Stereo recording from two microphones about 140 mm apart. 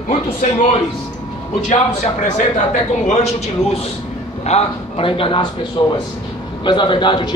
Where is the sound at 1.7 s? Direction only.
60° left (ahead or behind).